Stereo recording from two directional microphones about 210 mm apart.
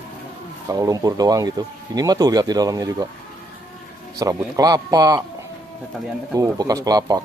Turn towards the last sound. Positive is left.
turn(degrees=-20)  # may be behind; listen again after turning